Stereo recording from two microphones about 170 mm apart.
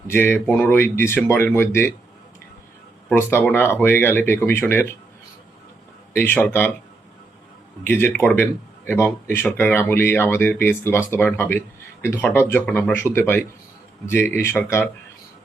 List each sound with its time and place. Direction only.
0.1 s speech: 10° left (ahead or behind)
3.1 s speech: 15° left (ahead or behind)
6.1 s speech: 10° left (ahead or behind)
7.9 s speech: 15° left (ahead or behind)